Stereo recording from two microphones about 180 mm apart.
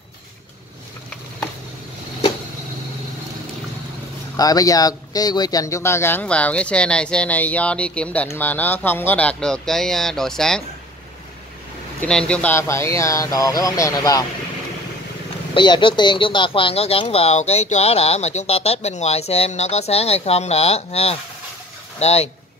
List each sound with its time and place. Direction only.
4.4 s speech: 20° left (ahead or behind); by 10.6 s 5° left (ahead or behind)
12.0 s speech: 5° left (ahead or behind)
15.5 s speech: 25° left (ahead or behind)